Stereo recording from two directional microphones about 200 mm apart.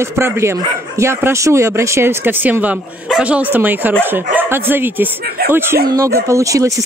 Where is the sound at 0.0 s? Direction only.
15° right (ahead or behind).